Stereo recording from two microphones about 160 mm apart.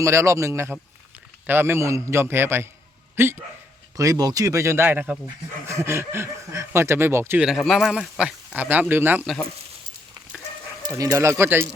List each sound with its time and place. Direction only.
0.0 s speech: 20° right (ahead or behind)
3.9 s speech: 20° right (ahead or behind)
7.4 s speech: centre (ahead or behind)
9.2 s speech: centre (ahead or behind)
10.8 s speech: 20° right (ahead or behind)